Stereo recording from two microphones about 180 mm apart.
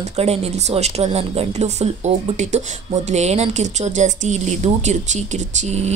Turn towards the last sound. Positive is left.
turn(degrees=-40)  # may be behind; listen again after turning